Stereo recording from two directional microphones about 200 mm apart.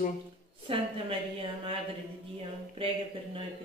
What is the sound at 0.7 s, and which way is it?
Speech, 30° right (ahead or behind).